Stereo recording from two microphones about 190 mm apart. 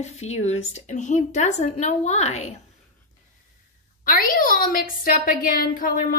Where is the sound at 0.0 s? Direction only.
35° left (ahead or behind).